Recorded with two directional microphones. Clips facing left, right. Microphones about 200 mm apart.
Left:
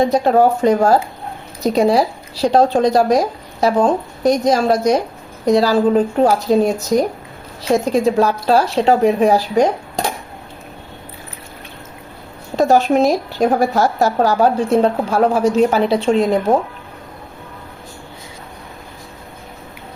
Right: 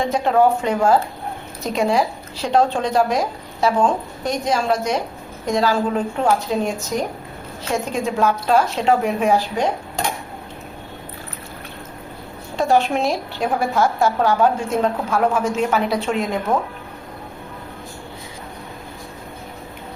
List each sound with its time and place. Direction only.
0.0 s a woman's voice: 35° left (ahead or behind)
12.5 s a woman's voice: 40° left (ahead or behind)